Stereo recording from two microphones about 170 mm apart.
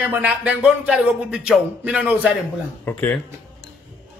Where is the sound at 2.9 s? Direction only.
10° left (ahead or behind).